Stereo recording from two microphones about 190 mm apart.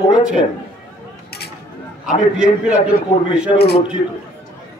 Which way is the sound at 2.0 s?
5° right (ahead or behind).